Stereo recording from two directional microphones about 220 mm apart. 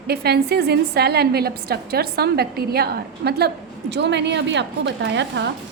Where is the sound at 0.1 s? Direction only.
45° right (ahead or behind).